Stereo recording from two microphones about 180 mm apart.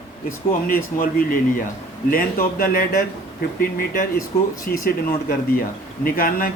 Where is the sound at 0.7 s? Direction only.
50° left (ahead or behind).